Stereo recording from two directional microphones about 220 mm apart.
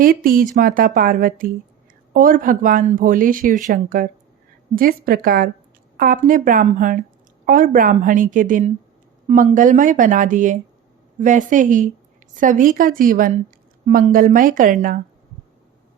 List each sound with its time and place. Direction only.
0.0 s speech: 40° right (ahead or behind)